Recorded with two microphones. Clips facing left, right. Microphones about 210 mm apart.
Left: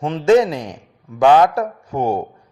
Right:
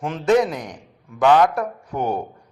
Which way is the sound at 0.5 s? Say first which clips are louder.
Left 4 dB; 25° left (ahead or behind).